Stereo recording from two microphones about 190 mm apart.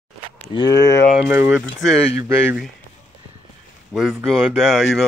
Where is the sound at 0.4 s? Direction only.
25° left (ahead or behind).